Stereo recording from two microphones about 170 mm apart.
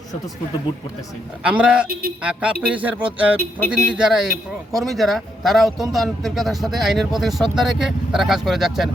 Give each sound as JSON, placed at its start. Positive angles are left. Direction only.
{"t": 1.5, "sound": "a man's voice", "side_deg": -5}
{"t": 1.9, "sound": "speech", "side_deg": -60}
{"t": 2.2, "sound": "a man's voice", "side_deg": -5}